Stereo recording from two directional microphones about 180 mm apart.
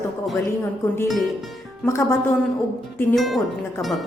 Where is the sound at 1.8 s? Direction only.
15° left (ahead or behind).